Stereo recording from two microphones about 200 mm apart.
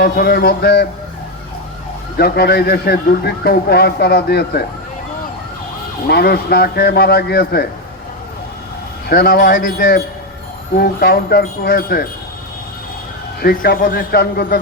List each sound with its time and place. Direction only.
0.0 s speech: 50° left (ahead or behind)
2.1 s speech: 50° left (ahead or behind)
6.1 s speech: 55° left (ahead or behind)
9.0 s speech: 50° left (ahead or behind)
13.4 s speech: 50° left (ahead or behind)